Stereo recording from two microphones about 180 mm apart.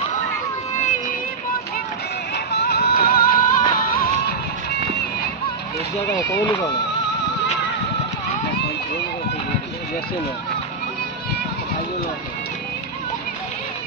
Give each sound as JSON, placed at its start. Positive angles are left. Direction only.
{"t": 0.7, "sound": "a sound", "side_deg": 40}
{"t": 2.3, "sound": "music", "side_deg": 65}
{"t": 6.4, "sound": "speech", "side_deg": 20}